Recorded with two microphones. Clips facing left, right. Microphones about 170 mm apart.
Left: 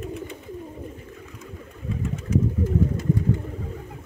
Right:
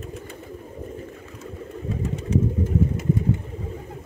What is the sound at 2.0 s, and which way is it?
Pigeon, 35° right (ahead or behind).